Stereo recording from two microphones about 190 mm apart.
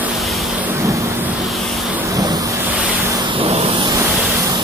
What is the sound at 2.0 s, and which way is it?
Vehicle, 20° right (ahead or behind).